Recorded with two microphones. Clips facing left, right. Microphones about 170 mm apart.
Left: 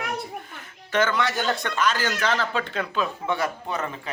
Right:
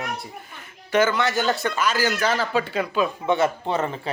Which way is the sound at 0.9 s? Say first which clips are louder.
Right 3 dB; 10° right (ahead or behind).